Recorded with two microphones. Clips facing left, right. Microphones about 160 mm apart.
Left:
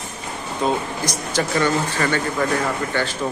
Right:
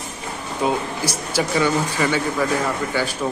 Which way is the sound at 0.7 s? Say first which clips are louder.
Even; 10° right (ahead or behind).